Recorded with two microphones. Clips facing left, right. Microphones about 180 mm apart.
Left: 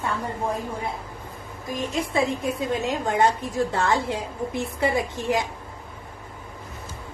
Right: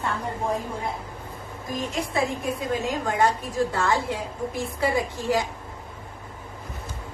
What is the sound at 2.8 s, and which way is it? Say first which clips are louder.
A woman's voice: left 2 dB; 20° left (ahead or behind).